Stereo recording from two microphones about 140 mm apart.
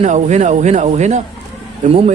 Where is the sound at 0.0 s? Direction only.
55° right (ahead or behind).